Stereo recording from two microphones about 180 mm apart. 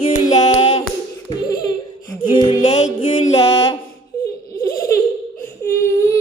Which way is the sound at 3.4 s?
20° left (ahead or behind).